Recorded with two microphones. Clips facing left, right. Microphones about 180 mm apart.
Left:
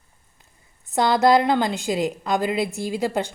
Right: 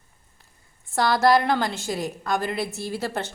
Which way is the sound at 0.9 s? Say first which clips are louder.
Left 2 dB; 20° left (ahead or behind).